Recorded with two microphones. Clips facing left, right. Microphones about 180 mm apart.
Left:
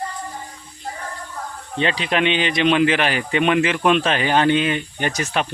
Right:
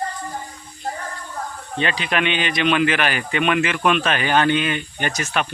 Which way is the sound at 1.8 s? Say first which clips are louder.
Left 2 dB; 25° left (ahead or behind).